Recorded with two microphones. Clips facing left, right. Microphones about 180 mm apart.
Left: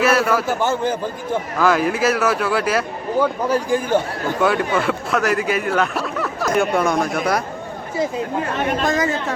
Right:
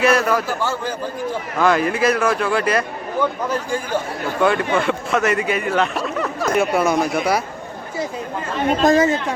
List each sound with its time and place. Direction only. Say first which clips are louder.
0.0 s speech: even; 5° left (ahead or behind)
1.5 s speech: right 1 dB; centre (ahead or behind)
8.8 s speech: right 8 dB; 35° right (ahead or behind)